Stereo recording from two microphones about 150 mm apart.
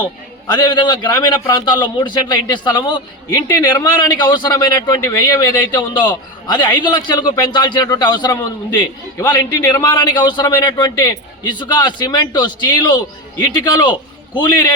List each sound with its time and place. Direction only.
0.4 s a man's voice: 30° left (ahead or behind)